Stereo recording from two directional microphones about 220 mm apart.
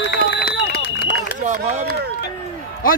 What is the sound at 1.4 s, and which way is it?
Speech, 30° right (ahead or behind).